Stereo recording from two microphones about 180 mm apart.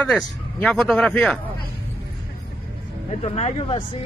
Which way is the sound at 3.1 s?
35° left (ahead or behind).